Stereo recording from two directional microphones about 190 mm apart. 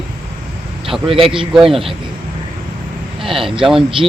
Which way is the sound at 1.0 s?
30° right (ahead or behind).